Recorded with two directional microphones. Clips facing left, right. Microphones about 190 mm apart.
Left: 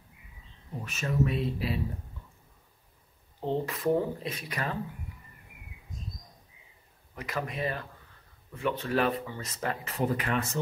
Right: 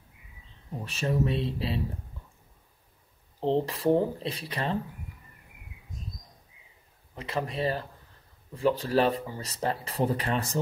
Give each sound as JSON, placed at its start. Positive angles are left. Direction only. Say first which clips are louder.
{"t": 0.8, "sound": "speech", "louder": "right 1 dB", "side_deg": -30}
{"t": 3.3, "sound": "speech", "louder": "right 4 dB", "side_deg": -30}
{"t": 7.2, "sound": "speech", "louder": "right 3 dB", "side_deg": -30}